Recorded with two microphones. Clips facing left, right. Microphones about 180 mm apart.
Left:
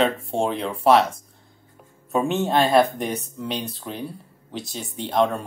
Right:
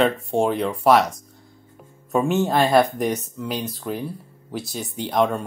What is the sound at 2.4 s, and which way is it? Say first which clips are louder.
Speech: even; 5° right (ahead or behind).